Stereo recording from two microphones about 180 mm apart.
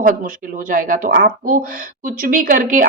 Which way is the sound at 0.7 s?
50° right (ahead or behind).